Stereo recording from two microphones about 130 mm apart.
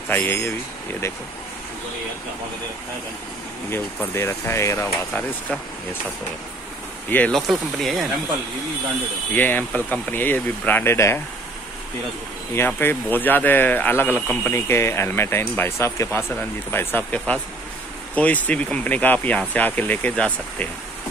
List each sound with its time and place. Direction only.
0.1 s speech: 15° left (ahead or behind)
3.7 s speech: 20° left (ahead or behind)
7.1 s speech: 15° left (ahead or behind)
7.3 s speech: centre (ahead or behind)
9.3 s speech: 15° left (ahead or behind)
12.5 s speech: 15° left (ahead or behind)